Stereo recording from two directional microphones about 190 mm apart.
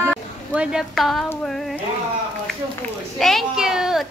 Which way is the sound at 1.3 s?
5° left (ahead or behind).